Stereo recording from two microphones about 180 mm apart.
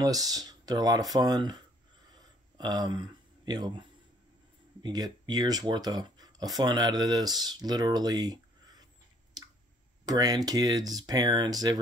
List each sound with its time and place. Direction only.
0.0 s speech: 20° right (ahead or behind)
4.8 s speech: 25° right (ahead or behind)
9.4 s squish: 20° right (ahead or behind)
10.0 s speech: 20° right (ahead or behind)